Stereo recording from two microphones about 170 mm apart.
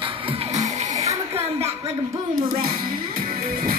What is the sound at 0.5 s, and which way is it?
Music, 45° right (ahead or behind).